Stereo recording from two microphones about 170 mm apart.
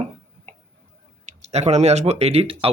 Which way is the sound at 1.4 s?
40° right (ahead or behind).